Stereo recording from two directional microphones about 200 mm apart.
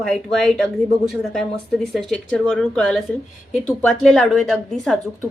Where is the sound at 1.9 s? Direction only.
Centre (ahead or behind).